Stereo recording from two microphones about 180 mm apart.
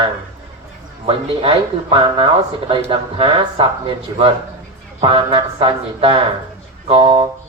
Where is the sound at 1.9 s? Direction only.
30° right (ahead or behind).